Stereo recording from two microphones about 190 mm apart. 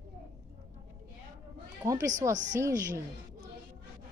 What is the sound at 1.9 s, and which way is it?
Speech, 20° right (ahead or behind).